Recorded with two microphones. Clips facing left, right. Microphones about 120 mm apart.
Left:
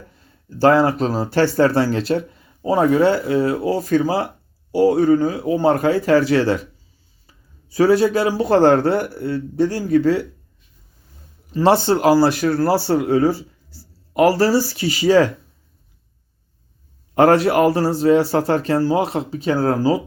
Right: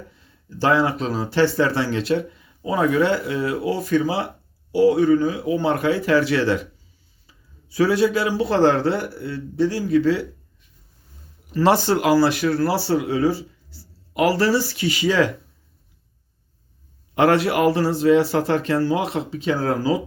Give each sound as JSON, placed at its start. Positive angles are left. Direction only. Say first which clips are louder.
{"t": 0.2, "sound": "speech", "louder": "left 7 dB", "side_deg": 40}
{"t": 7.7, "sound": "a man's voice", "louder": "left 3 dB", "side_deg": 45}
{"t": 11.5, "sound": "speech", "louder": "left 2 dB", "side_deg": 30}
{"t": 17.2, "sound": "speech", "louder": "left 4 dB", "side_deg": 40}